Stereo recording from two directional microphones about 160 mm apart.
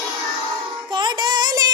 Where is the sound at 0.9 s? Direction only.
25° right (ahead or behind).